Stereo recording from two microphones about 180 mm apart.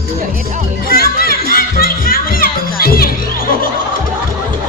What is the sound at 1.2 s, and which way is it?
Music, 55° left (ahead or behind).